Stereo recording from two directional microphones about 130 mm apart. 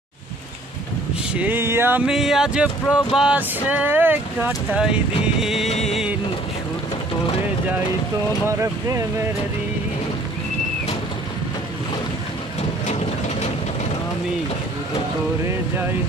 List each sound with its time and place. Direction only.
1.3 s a sound: 15° right (ahead or behind)
2.0 s a sound: 5° right (ahead or behind)
4.5 s speech: 5° right (ahead or behind)
5.7 s music of bollywood: 55° left (ahead or behind)
8.5 s speech: 20° right (ahead or behind)
12.8 s vehicle: 60° left (ahead or behind)